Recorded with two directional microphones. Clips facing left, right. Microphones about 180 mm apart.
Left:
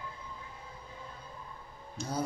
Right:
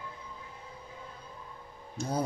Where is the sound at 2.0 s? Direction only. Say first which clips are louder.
Right 4 dB; 55° right (ahead or behind).